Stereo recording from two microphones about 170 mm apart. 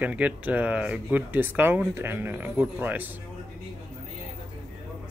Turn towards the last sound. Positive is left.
turn(degrees=-10)  # may be behind; listen again after turning